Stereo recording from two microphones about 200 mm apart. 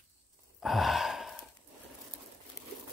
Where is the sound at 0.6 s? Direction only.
Centre (ahead or behind).